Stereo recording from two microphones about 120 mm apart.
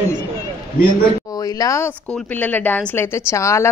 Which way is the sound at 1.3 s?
30° left (ahead or behind).